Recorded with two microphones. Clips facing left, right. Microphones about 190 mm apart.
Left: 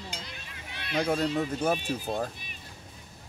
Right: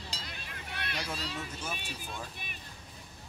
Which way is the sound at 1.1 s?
60° left (ahead or behind).